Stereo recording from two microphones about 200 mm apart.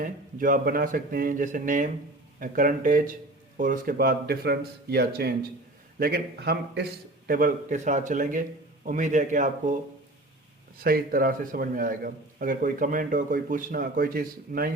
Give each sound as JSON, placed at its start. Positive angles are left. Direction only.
{"t": 0.0, "sound": "a man's voice", "side_deg": -45}
{"t": 7.3, "sound": "a man's voice", "side_deg": -45}
{"t": 10.8, "sound": "a man's voice", "side_deg": -50}